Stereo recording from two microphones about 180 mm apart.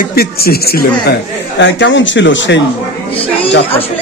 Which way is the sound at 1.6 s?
85° left.